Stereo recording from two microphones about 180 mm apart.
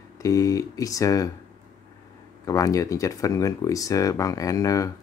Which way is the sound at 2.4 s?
20° left (ahead or behind).